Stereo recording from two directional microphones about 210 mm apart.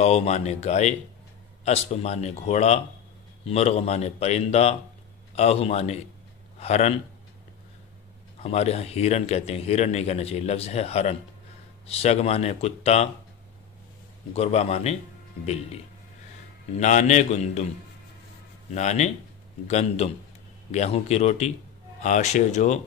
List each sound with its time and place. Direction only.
0.0 s a man's voice: 30° left (ahead or behind)
8.4 s a man's voice: 30° left (ahead or behind)
14.3 s speech: 30° left (ahead or behind)
16.8 s speech: 35° left (ahead or behind)
18.8 s speech: 30° left (ahead or behind)